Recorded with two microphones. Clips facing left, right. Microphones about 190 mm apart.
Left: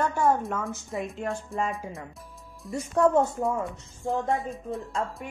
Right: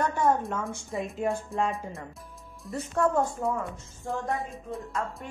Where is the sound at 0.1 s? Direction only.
5° left (ahead or behind).